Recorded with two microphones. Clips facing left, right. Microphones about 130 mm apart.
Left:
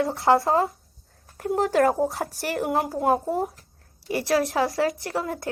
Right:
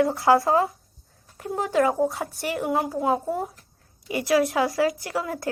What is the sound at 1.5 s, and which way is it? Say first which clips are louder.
Speech: left 2 dB; 50° left (ahead or behind).